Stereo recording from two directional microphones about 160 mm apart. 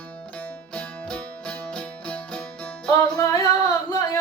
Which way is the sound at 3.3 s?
20° left (ahead or behind).